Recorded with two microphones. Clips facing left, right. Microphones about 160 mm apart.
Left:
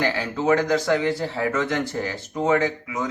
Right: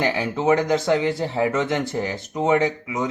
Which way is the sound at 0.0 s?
20° right (ahead or behind).